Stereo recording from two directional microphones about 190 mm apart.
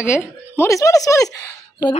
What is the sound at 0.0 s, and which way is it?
A child's voice, 10° left (ahead or behind).